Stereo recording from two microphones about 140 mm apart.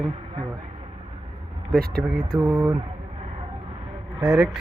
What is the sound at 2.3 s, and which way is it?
Speech, 30° right (ahead or behind).